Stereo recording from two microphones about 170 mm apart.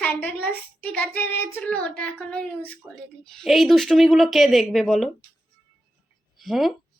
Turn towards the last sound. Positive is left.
turn(degrees=0)  # may be behind; listen again after turning